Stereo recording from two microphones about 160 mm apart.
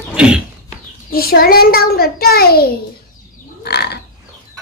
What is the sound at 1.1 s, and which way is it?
A woman's voice, 70° left (ahead or behind).